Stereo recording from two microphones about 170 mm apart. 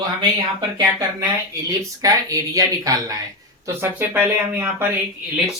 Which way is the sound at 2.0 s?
20° right (ahead or behind).